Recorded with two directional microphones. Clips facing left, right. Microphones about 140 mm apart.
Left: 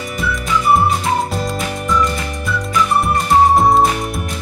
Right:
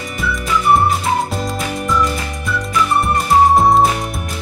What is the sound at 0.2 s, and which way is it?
Music, centre (ahead or behind).